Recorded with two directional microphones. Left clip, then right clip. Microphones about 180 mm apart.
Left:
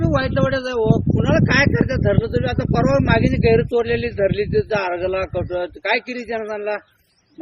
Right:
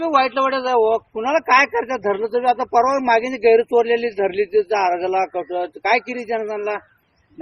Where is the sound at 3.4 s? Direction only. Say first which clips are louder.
Right 4 dB; centre (ahead or behind).